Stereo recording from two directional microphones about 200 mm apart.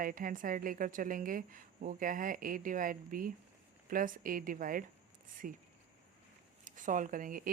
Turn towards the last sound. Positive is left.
turn(degrees=-45)  # may be behind; listen again after turning